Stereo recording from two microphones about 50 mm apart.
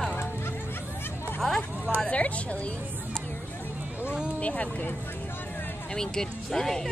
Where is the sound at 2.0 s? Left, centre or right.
Left.